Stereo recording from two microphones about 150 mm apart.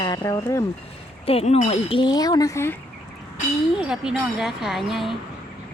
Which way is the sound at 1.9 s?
30° left (ahead or behind).